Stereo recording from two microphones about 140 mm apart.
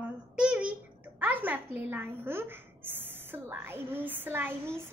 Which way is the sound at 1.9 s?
15° right (ahead or behind).